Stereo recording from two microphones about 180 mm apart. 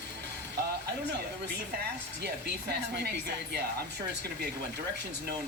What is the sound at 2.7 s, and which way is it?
Speech, 65° right (ahead or behind).